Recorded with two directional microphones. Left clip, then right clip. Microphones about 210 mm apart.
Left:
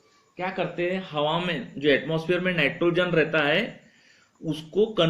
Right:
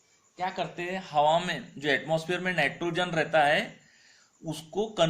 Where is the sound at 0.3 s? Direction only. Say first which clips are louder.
Left 4 dB; 30° right (ahead or behind).